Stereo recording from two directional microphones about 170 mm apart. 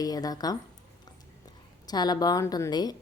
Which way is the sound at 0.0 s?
20° left (ahead or behind).